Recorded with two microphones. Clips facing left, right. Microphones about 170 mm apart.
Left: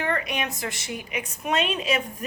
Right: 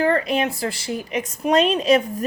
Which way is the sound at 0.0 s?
35° right (ahead or behind).